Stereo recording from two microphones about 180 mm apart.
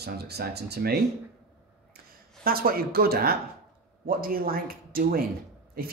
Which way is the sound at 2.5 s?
55° right (ahead or behind).